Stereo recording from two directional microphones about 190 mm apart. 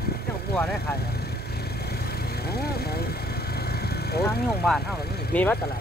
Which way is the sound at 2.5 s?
55° left (ahead or behind).